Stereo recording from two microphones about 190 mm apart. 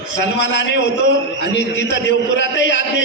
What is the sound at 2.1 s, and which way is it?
Speech, 70° left (ahead or behind).